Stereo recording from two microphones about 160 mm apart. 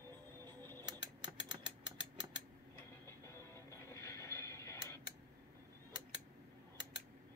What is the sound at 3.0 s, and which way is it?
Music, 15° left (ahead or behind).